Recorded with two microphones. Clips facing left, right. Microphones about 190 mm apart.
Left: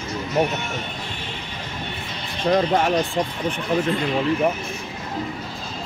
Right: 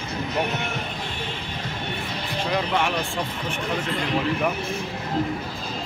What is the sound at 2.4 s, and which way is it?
Speech, 40° left (ahead or behind).